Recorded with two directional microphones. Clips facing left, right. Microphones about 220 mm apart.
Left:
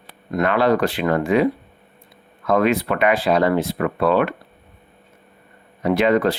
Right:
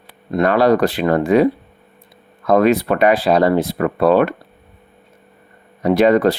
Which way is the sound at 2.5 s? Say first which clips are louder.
Right 4 dB; 40° right (ahead or behind).